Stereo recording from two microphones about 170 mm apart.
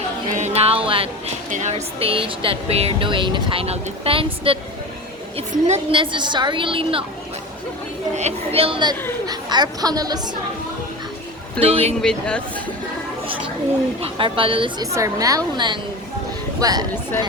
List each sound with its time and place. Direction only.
0.3 s music: 40° right (ahead or behind)
1.5 s a woman's voice: 45° right (ahead or behind)
8.1 s a woman's voice: 35° right (ahead or behind); by 10.2 s 20° right (ahead or behind)
11.6 s speech: 35° right (ahead or behind)
12.0 s speech: 5° left (ahead or behind)
14.0 s speech: 30° right (ahead or behind)
14.9 s a woman's voice: 20° right (ahead or behind)